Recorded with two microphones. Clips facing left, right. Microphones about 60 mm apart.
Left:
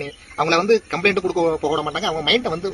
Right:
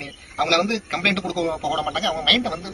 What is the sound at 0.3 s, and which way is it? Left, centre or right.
Speech, left.